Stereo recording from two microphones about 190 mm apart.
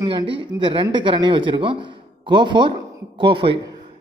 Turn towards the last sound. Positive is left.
turn(degrees=-25)  # may be behind; listen again after turning